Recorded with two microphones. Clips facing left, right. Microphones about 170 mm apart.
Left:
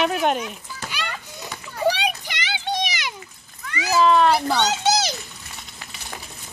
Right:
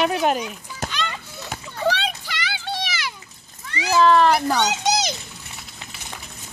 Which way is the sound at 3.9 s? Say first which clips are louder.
Right 1 dB; 5° left (ahead or behind).